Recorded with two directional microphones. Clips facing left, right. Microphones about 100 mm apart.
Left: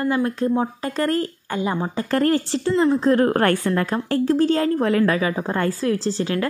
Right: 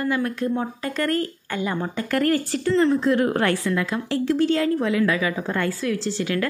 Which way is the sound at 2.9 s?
40° left (ahead or behind).